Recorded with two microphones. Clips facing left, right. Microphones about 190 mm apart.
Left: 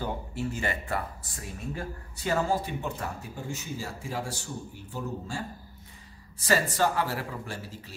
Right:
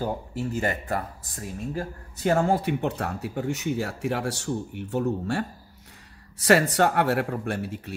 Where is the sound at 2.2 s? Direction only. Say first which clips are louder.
Right 5 dB; 55° right (ahead or behind).